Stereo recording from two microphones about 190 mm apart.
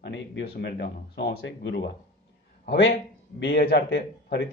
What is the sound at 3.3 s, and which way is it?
Speech, 55° left (ahead or behind).